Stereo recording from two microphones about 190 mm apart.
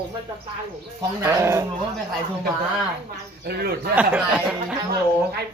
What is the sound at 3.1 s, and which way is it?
Speech, 55° right (ahead or behind).